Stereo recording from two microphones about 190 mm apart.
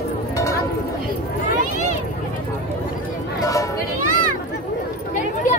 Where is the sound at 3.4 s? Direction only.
20° left (ahead or behind).